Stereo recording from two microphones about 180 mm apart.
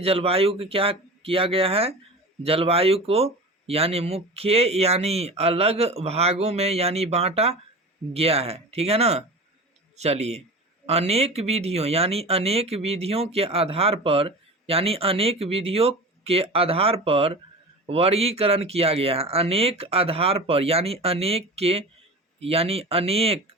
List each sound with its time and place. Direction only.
0.0 s speech: 35° right (ahead or behind)